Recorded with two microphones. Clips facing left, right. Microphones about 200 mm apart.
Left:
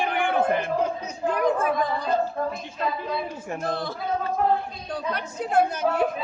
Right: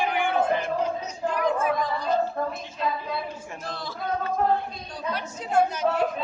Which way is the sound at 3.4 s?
55° left (ahead or behind).